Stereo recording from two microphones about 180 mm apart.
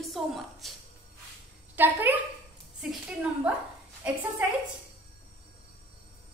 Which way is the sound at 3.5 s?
5° right (ahead or behind).